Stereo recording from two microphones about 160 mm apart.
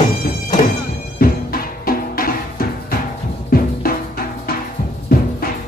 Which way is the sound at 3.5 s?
65° left (ahead or behind).